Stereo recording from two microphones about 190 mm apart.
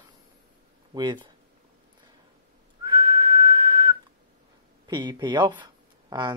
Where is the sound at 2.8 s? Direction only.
20° right (ahead or behind).